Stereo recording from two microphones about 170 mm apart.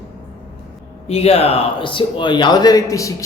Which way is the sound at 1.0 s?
35° left (ahead or behind).